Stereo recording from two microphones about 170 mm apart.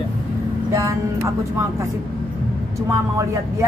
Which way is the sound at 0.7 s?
15° right (ahead or behind).